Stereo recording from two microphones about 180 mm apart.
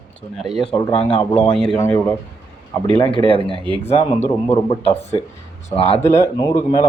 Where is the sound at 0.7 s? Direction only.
25° left (ahead or behind).